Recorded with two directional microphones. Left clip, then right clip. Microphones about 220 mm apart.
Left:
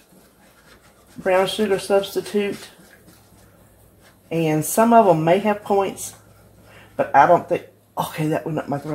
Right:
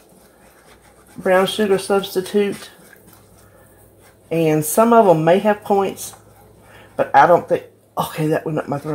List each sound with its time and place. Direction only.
1.2 s speech: 30° right (ahead or behind)
4.3 s speech: 35° right (ahead or behind)
7.0 s speech: 30° right (ahead or behind)